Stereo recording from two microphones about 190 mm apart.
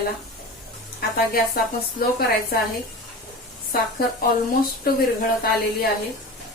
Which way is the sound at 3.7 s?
50° left (ahead or behind).